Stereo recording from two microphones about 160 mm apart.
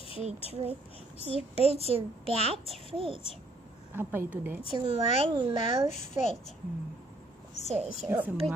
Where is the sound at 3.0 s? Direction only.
40° left (ahead or behind).